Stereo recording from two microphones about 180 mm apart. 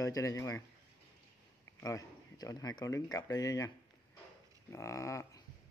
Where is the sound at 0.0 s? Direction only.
20° left (ahead or behind).